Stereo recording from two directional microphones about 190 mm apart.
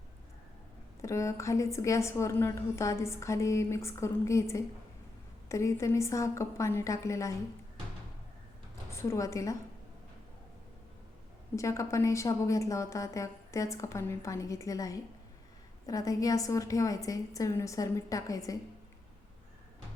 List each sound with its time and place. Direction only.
1.0 s a woman's voice: 15° left (ahead or behind)
8.9 s a woman's voice: 15° left (ahead or behind)
11.5 s a woman's voice: 15° left (ahead or behind)